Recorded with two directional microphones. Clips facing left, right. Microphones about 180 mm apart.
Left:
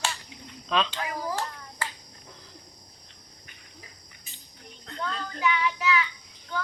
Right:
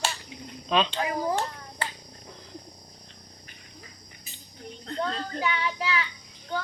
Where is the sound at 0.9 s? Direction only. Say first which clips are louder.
Right 5 dB; 25° right (ahead or behind).